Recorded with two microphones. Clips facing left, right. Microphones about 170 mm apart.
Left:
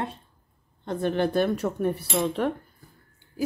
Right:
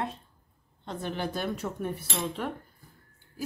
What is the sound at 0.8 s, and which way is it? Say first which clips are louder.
Speech: left 8 dB; 55° left (ahead or behind).